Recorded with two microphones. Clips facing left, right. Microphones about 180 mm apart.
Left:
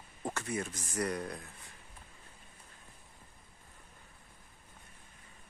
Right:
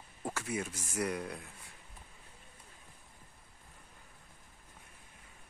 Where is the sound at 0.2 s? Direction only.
5° right (ahead or behind).